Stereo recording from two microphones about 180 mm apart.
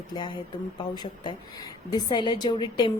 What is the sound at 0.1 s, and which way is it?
A woman's voice, 25° left (ahead or behind).